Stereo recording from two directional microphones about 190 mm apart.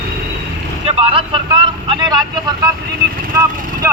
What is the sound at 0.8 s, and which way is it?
Speech, 30° right (ahead or behind).